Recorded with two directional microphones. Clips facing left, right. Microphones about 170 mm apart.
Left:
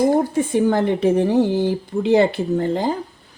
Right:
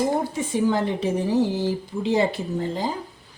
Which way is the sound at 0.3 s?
55° left (ahead or behind).